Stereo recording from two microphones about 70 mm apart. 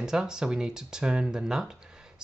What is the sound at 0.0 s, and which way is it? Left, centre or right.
Speech, centre.